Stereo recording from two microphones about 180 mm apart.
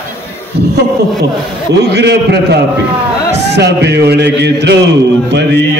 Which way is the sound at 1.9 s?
65° right (ahead or behind).